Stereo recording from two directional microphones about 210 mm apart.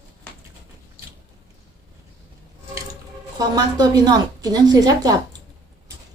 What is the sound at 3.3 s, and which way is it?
A woman's voice, 20° right (ahead or behind).